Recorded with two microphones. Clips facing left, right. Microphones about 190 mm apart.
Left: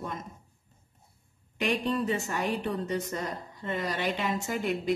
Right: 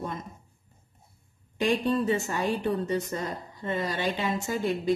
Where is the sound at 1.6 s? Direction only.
30° right (ahead or behind).